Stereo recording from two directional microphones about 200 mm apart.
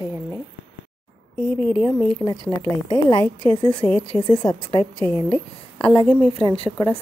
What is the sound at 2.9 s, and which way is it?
A woman's voice, 20° left (ahead or behind).